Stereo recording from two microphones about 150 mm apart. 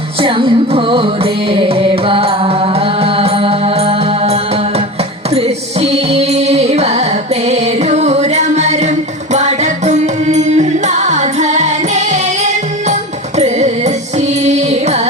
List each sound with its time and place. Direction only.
0.2 s music: 35° right (ahead or behind)